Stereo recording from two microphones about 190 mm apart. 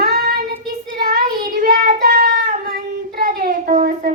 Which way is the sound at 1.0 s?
45° right (ahead or behind).